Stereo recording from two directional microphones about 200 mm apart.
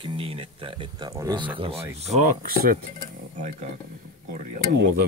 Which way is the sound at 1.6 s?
30° right (ahead or behind).